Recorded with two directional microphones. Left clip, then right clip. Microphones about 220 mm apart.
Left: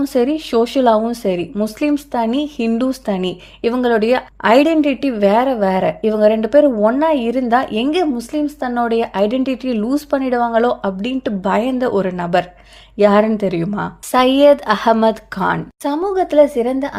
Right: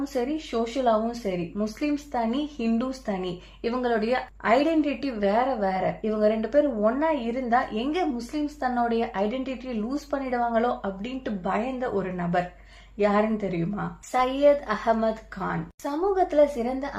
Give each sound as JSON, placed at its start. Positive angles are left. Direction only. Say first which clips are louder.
{"t": 0.0, "sound": "a woman's voice", "louder": "left 12 dB", "side_deg": 45}